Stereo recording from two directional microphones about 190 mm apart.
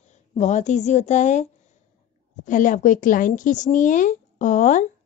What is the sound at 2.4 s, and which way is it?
A woman's voice, 45° left (ahead or behind).